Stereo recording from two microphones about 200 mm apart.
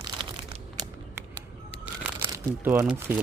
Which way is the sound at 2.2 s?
15° right (ahead or behind).